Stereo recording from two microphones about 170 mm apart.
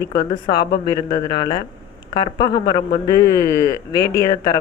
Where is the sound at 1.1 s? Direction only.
25° left (ahead or behind).